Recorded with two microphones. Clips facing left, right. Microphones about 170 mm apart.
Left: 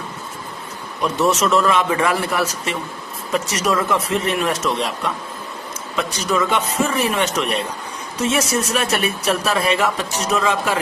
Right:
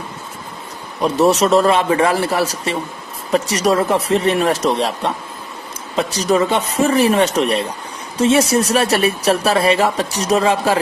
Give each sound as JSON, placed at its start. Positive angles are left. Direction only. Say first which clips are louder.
{"t": 1.0, "sound": "speech", "louder": "right 4 dB", "side_deg": -35}